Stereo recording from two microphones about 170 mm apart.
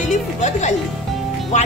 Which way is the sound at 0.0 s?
45° left (ahead or behind).